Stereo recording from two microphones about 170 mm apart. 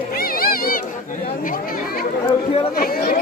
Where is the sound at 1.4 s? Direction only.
55° left (ahead or behind).